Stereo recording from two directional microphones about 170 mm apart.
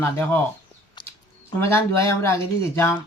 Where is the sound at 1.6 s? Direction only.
15° left (ahead or behind).